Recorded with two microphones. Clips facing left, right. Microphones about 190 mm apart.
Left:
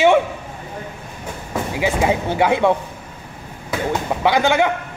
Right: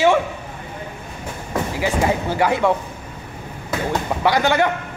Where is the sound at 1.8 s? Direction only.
15° left (ahead or behind).